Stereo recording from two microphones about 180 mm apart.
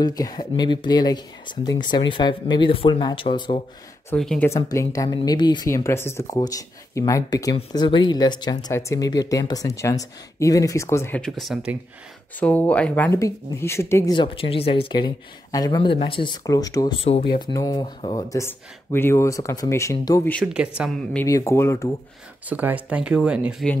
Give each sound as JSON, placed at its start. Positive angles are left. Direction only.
{"t": 0.0, "sound": "speech", "side_deg": 20}
{"t": 4.1, "sound": "speech", "side_deg": 5}
{"t": 4.5, "sound": "speech", "side_deg": 15}
{"t": 12.4, "sound": "speech", "side_deg": 10}
{"t": 14.1, "sound": "speech", "side_deg": 30}
{"t": 20.4, "sound": "speech", "side_deg": -5}
{"t": 21.3, "sound": "speech", "side_deg": 15}
{"t": 22.5, "sound": "speech", "side_deg": -10}